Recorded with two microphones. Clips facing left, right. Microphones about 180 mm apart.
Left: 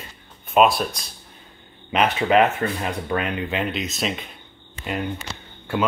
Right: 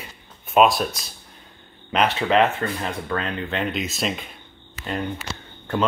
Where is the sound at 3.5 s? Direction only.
Centre (ahead or behind).